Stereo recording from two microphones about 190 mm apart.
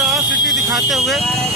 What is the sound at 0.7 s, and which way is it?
Speech, centre (ahead or behind).